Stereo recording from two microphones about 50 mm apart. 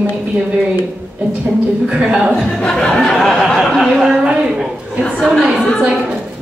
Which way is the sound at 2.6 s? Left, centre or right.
Centre.